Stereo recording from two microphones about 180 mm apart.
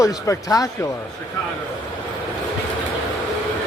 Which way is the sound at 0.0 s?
20° left (ahead or behind).